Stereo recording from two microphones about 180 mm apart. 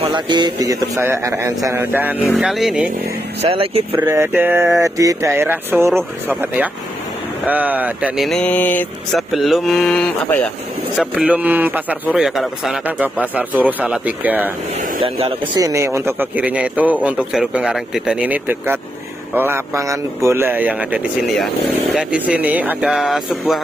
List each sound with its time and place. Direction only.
0.0 s a man's voice: 25° right (ahead or behind); by 2.9 s 5° right (ahead or behind)
3.4 s speech: 30° right (ahead or behind)
3.9 s a man's voice: 10° right (ahead or behind)
8.3 s mantra: 5° left (ahead or behind)
9.3 s speech: centre (ahead or behind)
11.0 s a man's voice: 5° right (ahead or behind)
15.0 s speech: 30° right (ahead or behind)
15.6 s a man's voice: 15° right (ahead or behind)